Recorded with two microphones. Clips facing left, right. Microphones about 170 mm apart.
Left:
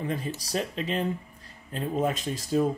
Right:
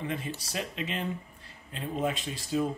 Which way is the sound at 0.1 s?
40° left (ahead or behind).